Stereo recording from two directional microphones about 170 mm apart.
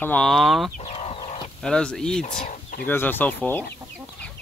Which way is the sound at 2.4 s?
55° left (ahead or behind).